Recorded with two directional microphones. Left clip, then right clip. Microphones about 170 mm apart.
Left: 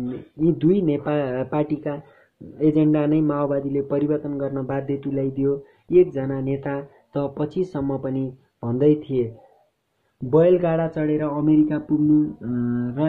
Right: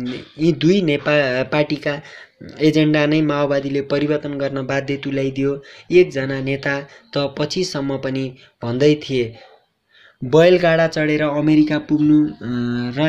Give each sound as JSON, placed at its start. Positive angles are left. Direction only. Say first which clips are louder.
{"t": 0.4, "sound": "a man's voice", "louder": "right 3 dB", "side_deg": -10}
{"t": 8.5, "sound": "speech", "louder": "right 3 dB", "side_deg": -20}
{"t": 8.8, "sound": "a man's voice", "louder": "right 3 dB", "side_deg": -10}
{"t": 10.3, "sound": "a man's voice", "louder": "right 5 dB", "side_deg": -15}
{"t": 12.4, "sound": "mantra", "louder": "right 3 dB", "side_deg": -20}